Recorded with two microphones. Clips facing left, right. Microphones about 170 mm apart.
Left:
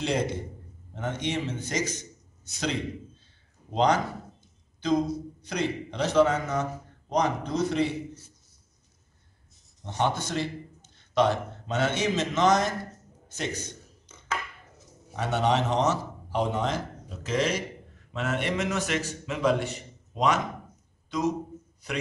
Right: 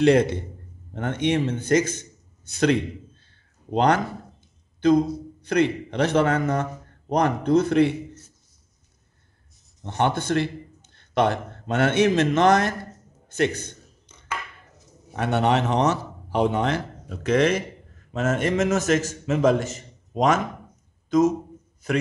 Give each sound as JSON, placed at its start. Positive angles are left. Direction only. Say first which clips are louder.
{"t": 0.0, "sound": "a man's voice", "louder": "right 10 dB", "side_deg": -65}
{"t": 9.8, "sound": "a man's voice", "louder": "right 5 dB", "side_deg": -60}
{"t": 15.1, "sound": "a man's voice", "louder": "right 4 dB", "side_deg": -60}
{"t": 18.1, "sound": "a man's voice", "louder": "right 6 dB", "side_deg": -45}